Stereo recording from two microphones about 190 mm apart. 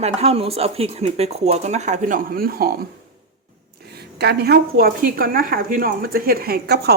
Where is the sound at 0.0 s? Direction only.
35° right (ahead or behind); by 2.7 s 50° right (ahead or behind).